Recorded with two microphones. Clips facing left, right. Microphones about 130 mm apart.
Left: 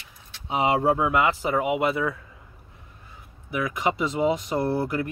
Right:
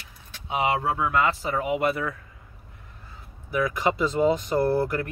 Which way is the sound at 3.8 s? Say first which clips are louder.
Even; 20° left (ahead or behind).